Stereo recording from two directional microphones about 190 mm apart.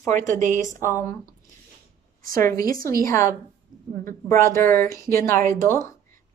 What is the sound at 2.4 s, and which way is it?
Speech, 20° left (ahead or behind).